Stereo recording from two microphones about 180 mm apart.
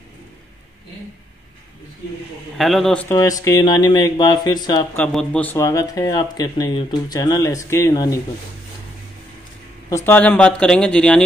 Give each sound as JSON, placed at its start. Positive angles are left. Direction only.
{"t": 2.5, "sound": "speech", "side_deg": 0}
{"t": 3.2, "sound": "speech", "side_deg": 20}
{"t": 4.9, "sound": "speech", "side_deg": 5}
{"t": 9.8, "sound": "speech", "side_deg": 15}